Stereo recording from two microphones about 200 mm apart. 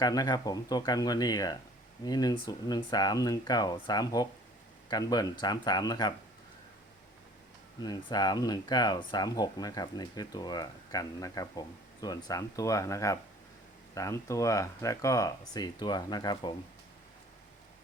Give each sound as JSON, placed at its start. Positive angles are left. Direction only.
{"t": 0.0, "sound": "speech", "side_deg": 20}
{"t": 7.8, "sound": "speech", "side_deg": 20}